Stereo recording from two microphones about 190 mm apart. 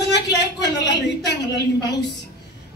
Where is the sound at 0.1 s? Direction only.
65° left (ahead or behind).